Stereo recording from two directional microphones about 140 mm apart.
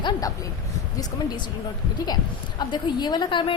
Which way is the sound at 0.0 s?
30° left (ahead or behind).